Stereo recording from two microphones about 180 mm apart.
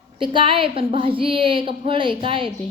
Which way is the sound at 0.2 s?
25° right (ahead or behind).